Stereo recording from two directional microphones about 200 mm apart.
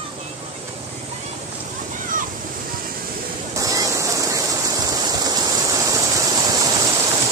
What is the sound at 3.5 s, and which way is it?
Stream, 15° right (ahead or behind).